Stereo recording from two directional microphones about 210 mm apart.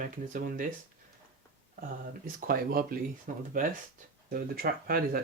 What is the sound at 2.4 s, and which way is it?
Speech, 45° right (ahead or behind).